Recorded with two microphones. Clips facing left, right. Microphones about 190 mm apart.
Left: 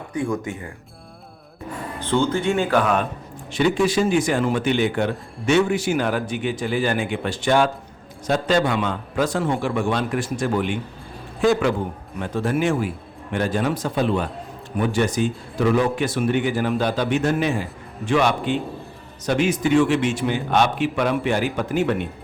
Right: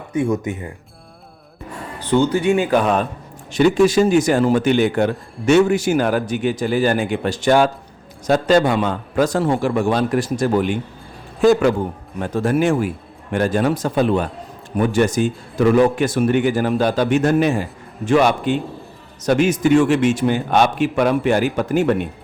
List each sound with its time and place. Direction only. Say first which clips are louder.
0.1 s speech: right 5 dB; 20° right (ahead or behind)
2.0 s speech: right 5 dB; 15° right (ahead or behind)
2.8 s speech: right 3 dB; 35° right (ahead or behind)
3.5 s a man's voice: right 5 dB; 45° right (ahead or behind)